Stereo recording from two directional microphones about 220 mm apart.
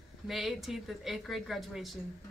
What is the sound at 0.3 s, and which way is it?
Speech, centre (ahead or behind).